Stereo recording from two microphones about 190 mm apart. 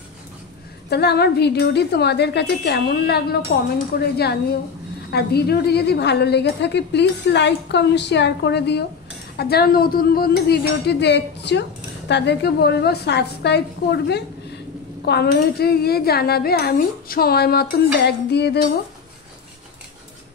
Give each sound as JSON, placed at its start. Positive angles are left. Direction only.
{"t": 0.8, "sound": "a woman's voice", "side_deg": 60}